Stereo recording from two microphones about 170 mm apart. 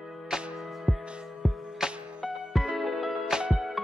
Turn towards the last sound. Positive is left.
turn(degrees=0)  # may be behind; listen again after turning